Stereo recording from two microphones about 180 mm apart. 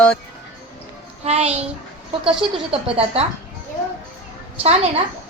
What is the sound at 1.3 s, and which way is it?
Speech, 35° right (ahead or behind).